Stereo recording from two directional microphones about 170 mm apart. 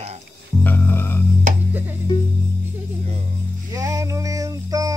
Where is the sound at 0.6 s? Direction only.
15° left (ahead or behind).